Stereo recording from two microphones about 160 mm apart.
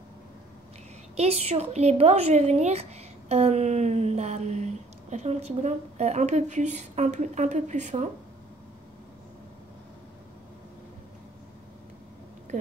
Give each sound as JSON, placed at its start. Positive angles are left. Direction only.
{"t": 1.1, "sound": "a woman's voice", "side_deg": -40}